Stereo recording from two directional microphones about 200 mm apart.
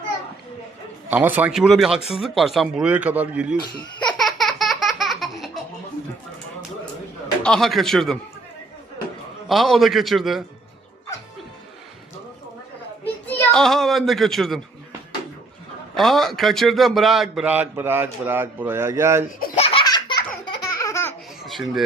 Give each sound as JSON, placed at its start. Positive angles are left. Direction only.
{"t": 1.1, "sound": "a man's voice", "side_deg": -10}
{"t": 4.2, "sound": "a sound", "side_deg": 0}
{"t": 7.4, "sound": "a man's voice", "side_deg": 0}
{"t": 9.5, "sound": "a man's voice", "side_deg": 0}
{"t": 13.4, "sound": "a man's voice", "side_deg": 0}
{"t": 16.0, "sound": "a man's voice", "side_deg": 0}
{"t": 19.5, "sound": "laughter", "side_deg": 30}
{"t": 21.4, "sound": "speech", "side_deg": 0}